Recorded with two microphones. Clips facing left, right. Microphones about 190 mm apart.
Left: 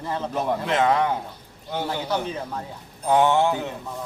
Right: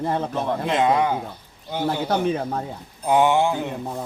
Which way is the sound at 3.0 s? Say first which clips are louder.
Right 1 dB; 10° right (ahead or behind).